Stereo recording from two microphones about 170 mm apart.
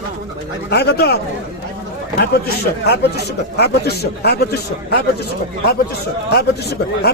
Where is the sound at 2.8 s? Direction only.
75° left (ahead or behind).